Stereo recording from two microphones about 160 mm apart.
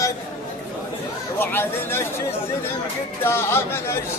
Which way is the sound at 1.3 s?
15° left (ahead or behind).